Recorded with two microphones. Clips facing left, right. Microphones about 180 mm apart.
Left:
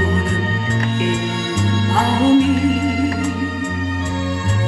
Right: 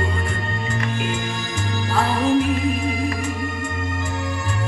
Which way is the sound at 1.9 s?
70° left (ahead or behind).